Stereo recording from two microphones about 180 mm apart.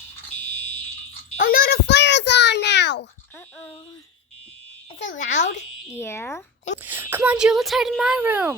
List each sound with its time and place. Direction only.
1.4 s a sound: 55° left (ahead or behind); by 3.1 s 75° left (ahead or behind)
4.9 s a child's voice: 45° left (ahead or behind)
6.0 s speech: 15° left (ahead or behind)
6.8 s speech: 10° right (ahead or behind)